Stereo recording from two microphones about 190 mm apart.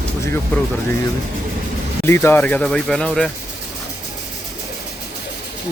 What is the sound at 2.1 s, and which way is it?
Speech, 10° left (ahead or behind).